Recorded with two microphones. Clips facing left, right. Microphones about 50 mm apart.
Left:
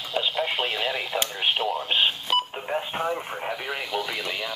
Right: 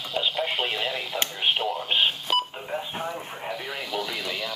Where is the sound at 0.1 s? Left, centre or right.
Centre.